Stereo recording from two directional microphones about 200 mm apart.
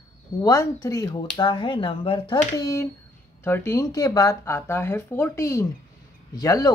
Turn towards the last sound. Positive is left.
turn(degrees=20)  # may be behind; listen again after turning